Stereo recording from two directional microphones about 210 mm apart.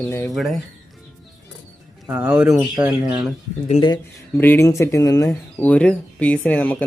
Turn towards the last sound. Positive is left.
turn(degrees=10)  # may be behind; listen again after turning